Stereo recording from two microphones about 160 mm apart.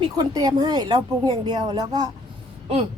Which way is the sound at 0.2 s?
25° right (ahead or behind).